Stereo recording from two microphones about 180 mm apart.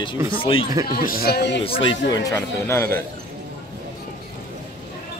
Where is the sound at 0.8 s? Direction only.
55° left (ahead or behind).